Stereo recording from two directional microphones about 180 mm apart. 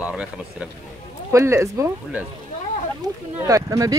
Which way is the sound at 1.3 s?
15° right (ahead or behind).